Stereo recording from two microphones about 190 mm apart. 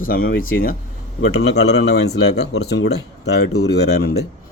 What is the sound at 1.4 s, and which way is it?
Speech, 60° left (ahead or behind).